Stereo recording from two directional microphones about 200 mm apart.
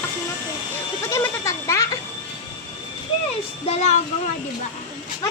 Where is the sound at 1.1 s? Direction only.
15° left (ahead or behind).